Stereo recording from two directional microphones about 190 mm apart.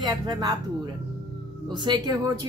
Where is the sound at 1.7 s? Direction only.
25° right (ahead or behind).